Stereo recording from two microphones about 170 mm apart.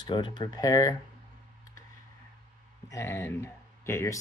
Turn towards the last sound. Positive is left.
turn(degrees=15)  # may be behind; listen again after turning